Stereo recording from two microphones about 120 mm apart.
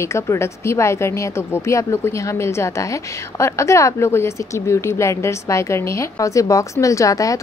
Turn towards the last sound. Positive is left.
turn(degrees=30)  # may be behind; listen again after turning